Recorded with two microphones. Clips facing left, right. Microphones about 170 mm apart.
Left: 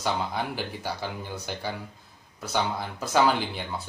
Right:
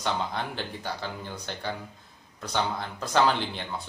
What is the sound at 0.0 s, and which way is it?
Speech, 10° left (ahead or behind).